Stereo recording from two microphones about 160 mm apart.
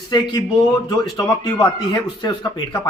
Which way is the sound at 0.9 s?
25° left (ahead or behind).